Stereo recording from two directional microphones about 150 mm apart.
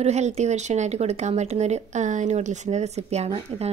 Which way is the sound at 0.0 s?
45° right (ahead or behind).